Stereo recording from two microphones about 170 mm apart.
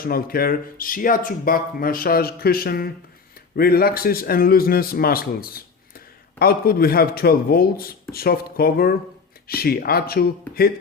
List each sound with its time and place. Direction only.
0.0 s speech: 60° left (ahead or behind)